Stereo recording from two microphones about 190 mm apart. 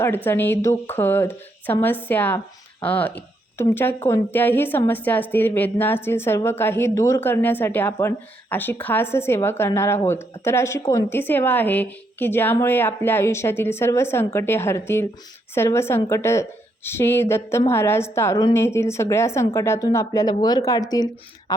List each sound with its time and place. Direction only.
0.0 s speech: 10° left (ahead or behind)